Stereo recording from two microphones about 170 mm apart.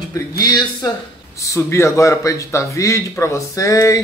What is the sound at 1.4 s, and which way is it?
A man's voice, 15° left (ahead or behind).